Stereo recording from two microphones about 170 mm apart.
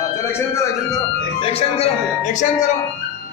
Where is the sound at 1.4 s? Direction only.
35° left (ahead or behind).